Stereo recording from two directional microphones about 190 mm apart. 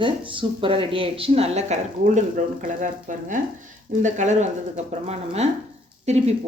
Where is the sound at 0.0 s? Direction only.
25° right (ahead or behind).